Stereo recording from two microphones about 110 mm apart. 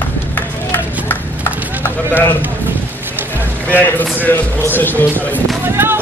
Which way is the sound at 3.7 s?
15° left (ahead or behind).